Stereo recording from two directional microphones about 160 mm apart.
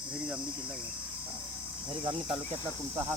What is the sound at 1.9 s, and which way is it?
Speech, 35° right (ahead or behind).